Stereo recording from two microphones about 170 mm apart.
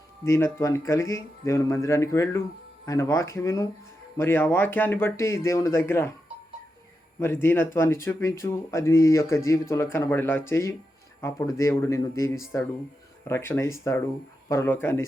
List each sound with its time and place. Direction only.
0.3 s speech: 15° left (ahead or behind)
7.2 s speech: 15° left (ahead or behind)